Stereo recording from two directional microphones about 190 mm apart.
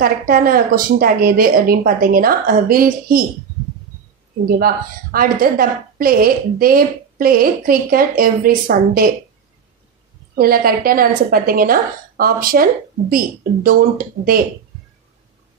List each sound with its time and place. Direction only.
0.0 s a woman's voice: 50° right (ahead or behind)
4.5 s a woman's voice: 50° right (ahead or behind)
10.3 s a woman's voice: 50° right (ahead or behind)